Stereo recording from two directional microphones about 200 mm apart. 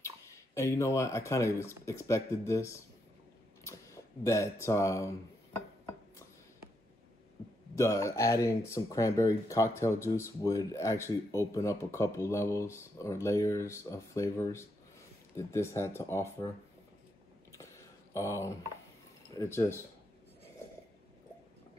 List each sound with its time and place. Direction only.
0.6 s speech: 15° left (ahead or behind)
7.7 s speech: 15° left (ahead or behind)
18.1 s speech: 15° left (ahead or behind)